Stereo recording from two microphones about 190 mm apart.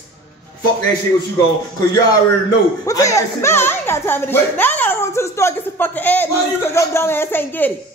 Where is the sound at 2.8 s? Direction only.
15° left (ahead or behind).